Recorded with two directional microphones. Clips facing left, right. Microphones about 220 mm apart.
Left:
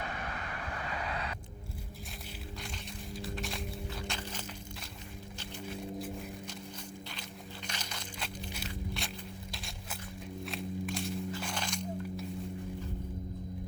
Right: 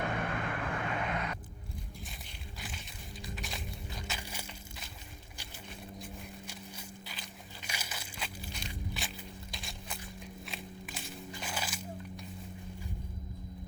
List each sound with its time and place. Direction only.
0.0 s vehicle: 50° right (ahead or behind)
0.9 s vehicle: 35° left (ahead or behind)
2.6 s music: 5° right (ahead or behind)
6.5 s walk: 5° right (ahead or behind)
7.7 s crushing: 10° right (ahead or behind)
8.5 s walk: centre (ahead or behind)